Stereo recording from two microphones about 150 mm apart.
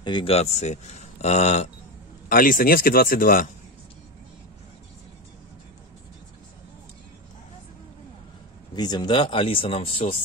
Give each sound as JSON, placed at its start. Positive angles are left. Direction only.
{"t": 0.0, "sound": "speech", "side_deg": 35}
{"t": 2.2, "sound": "speech", "side_deg": 65}
{"t": 8.7, "sound": "speech", "side_deg": 30}